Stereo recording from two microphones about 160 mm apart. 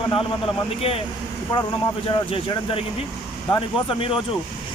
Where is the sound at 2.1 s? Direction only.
35° left (ahead or behind).